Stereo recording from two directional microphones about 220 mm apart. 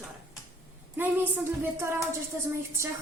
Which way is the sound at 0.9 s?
10° right (ahead or behind).